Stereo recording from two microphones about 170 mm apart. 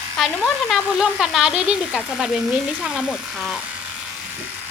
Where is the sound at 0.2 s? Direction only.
Centre (ahead or behind).